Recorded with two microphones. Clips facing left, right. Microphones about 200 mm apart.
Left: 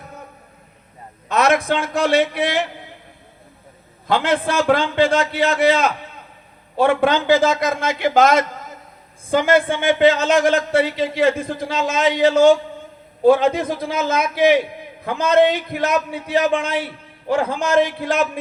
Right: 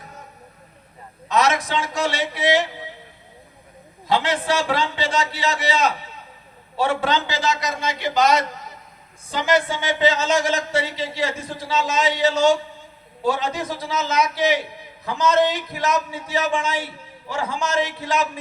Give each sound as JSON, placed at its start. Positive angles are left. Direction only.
{"t": 1.3, "sound": "a man's voice", "side_deg": 55}
{"t": 4.0, "sound": "a man's voice", "side_deg": 55}